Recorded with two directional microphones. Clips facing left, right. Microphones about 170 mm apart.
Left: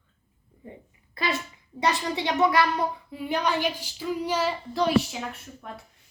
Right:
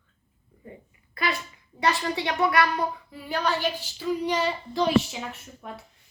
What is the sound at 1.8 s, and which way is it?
A woman's voice, 20° left (ahead or behind).